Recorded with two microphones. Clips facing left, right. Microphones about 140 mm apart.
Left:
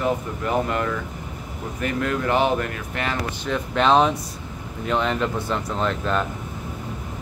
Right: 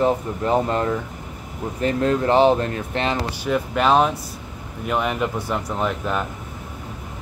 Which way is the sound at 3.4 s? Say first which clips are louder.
Right 1 dB; 5° right (ahead or behind).